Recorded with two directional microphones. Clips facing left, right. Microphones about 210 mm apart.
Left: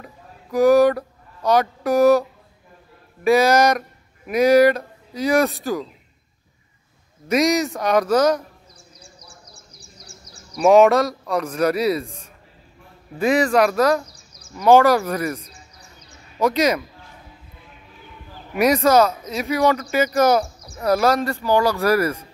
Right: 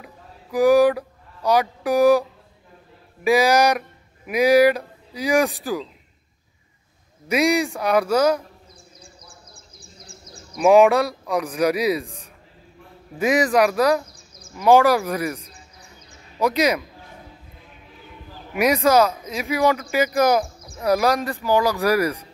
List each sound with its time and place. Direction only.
0.0 s a sound: 10° right (ahead or behind)
3.3 s speech: 15° right (ahead or behind)
7.2 s speech: 10° right (ahead or behind)
9.8 s a sound: 55° right (ahead or behind)
10.6 s speech: 10° right (ahead or behind)
13.2 s speech: 15° right (ahead or behind)
14.0 s a sound: 55° right (ahead or behind)
14.6 s speech: 15° right (ahead or behind)
18.5 s speech: 10° right (ahead or behind)